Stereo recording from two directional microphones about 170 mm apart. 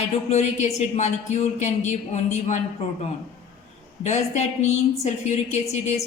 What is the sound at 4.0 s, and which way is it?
A woman's voice, 40° left (ahead or behind).